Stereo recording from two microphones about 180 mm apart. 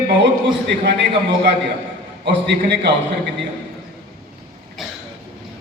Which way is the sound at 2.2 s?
70° right (ahead or behind).